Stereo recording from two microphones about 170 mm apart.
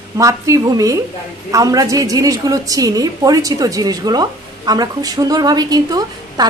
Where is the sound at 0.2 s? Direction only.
20° right (ahead or behind).